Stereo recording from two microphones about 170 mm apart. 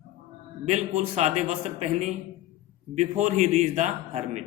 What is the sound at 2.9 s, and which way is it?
Mantra, 45° right (ahead or behind).